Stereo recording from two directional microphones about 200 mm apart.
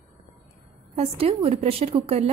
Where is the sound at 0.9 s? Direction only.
30° right (ahead or behind).